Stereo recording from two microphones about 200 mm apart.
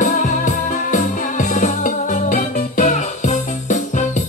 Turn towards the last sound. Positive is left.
turn(degrees=40)  # may be behind; listen again after turning